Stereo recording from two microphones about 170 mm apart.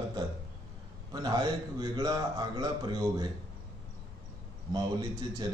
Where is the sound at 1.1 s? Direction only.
25° right (ahead or behind).